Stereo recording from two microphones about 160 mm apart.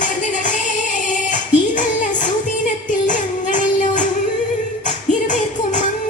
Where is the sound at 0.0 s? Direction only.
50° left (ahead or behind).